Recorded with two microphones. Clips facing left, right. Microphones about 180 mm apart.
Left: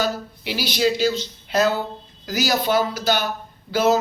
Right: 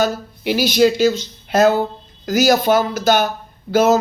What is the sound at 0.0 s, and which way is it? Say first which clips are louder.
Speech: right 5 dB; 50° right (ahead or behind).